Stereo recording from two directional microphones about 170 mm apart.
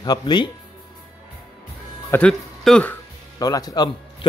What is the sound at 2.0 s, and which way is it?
Speech, 10° left (ahead or behind).